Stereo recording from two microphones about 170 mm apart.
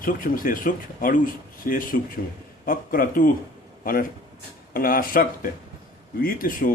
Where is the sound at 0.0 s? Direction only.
55° left (ahead or behind).